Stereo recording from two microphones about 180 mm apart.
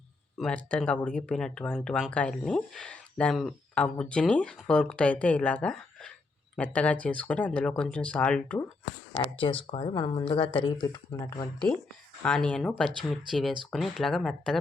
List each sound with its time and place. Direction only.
0.3 s speech: 5° left (ahead or behind)
9.1 s speech: 30° left (ahead or behind)
12.2 s speech: 5° left (ahead or behind)